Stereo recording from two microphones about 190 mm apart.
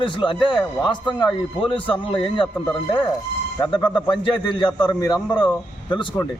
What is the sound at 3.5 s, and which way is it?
A man's voice, 25° left (ahead or behind).